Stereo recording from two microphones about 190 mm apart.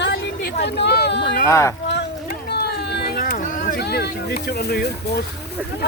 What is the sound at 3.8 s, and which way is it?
Speech, 55° left (ahead or behind).